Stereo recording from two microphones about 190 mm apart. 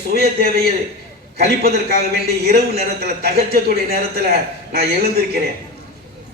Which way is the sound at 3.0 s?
55° right (ahead or behind).